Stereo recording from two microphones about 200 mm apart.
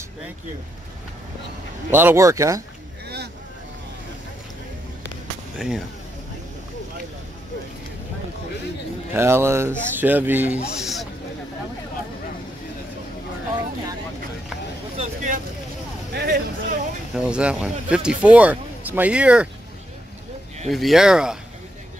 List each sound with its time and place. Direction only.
1.9 s speech: 10° right (ahead or behind)
9.1 s speech: 10° right (ahead or behind)
15.0 s vehicle: 40° right (ahead or behind)
16.2 s speech: 55° right (ahead or behind)
17.1 s speech: 5° right (ahead or behind)
20.6 s speech: centre (ahead or behind)